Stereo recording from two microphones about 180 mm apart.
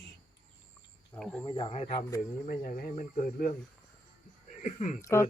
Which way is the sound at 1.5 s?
30° left (ahead or behind).